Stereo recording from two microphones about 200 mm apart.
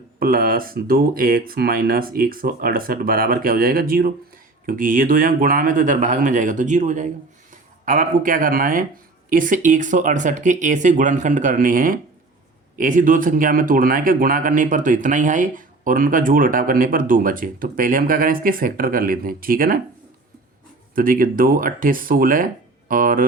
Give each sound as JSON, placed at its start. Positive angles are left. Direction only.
{"t": 0.2, "sound": "speech", "side_deg": -45}
{"t": 20.9, "sound": "speech", "side_deg": -45}